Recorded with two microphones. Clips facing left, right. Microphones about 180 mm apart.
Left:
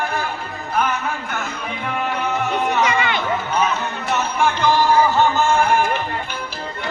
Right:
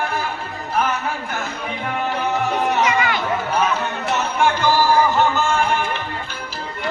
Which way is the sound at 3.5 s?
30° right (ahead or behind).